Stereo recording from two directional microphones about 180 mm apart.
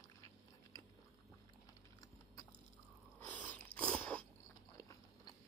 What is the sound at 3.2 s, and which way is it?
Biting, 10° left (ahead or behind).